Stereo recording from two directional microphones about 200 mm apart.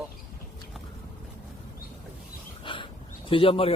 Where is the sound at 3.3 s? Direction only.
25° left (ahead or behind).